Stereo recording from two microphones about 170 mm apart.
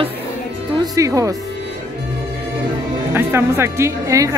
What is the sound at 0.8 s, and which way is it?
Speech, 20° right (ahead or behind).